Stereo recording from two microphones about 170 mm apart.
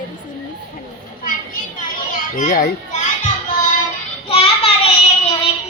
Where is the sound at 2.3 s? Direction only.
55° left (ahead or behind).